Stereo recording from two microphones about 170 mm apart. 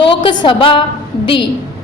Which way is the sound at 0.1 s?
30° left (ahead or behind).